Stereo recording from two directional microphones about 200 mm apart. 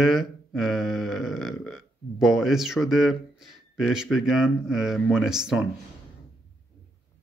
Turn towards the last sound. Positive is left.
turn(degrees=0)  # may be behind; listen again after turning